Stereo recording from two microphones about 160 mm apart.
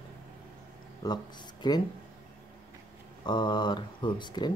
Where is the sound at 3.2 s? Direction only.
30° left (ahead or behind).